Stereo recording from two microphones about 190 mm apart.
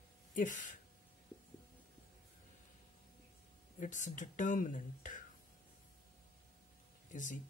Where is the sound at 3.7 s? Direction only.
40° left (ahead or behind).